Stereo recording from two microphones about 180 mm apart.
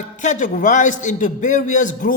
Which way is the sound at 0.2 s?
45° left (ahead or behind).